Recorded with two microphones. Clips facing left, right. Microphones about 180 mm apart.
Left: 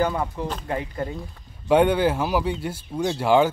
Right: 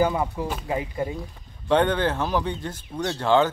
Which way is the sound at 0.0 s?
10° right (ahead or behind).